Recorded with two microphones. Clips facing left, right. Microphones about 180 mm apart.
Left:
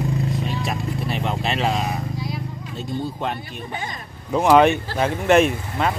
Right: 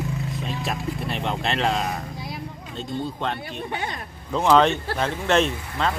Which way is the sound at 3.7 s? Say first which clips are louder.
Even; 65° right (ahead or behind).